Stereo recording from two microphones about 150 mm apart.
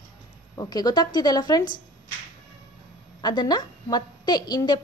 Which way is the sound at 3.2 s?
25° left (ahead or behind).